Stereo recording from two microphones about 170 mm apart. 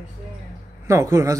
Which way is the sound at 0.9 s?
15° right (ahead or behind).